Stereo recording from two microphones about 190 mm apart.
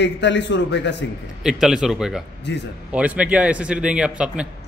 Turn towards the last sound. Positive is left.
turn(degrees=-5)  # may be behind; listen again after turning